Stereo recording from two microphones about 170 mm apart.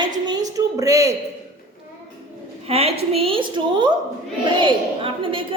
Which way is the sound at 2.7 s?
35° right (ahead or behind).